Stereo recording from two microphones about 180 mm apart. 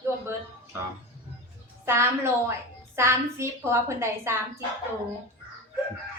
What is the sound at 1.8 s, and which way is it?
A woman's voice, 15° right (ahead or behind).